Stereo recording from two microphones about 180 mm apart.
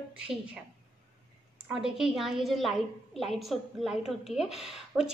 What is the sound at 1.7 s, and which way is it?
A woman's voice, 5° right (ahead or behind).